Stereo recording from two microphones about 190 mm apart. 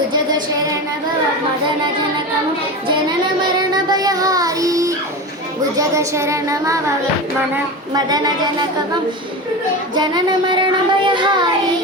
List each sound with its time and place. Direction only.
0.1 s music: 25° right (ahead or behind)
3.7 s child singing: 20° right (ahead or behind)
7.9 s speech: 20° right (ahead or behind)
9.9 s speech: 20° right (ahead or behind)